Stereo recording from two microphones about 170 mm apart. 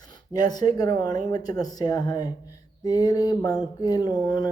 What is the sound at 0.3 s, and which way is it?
Speech, 25° left (ahead or behind).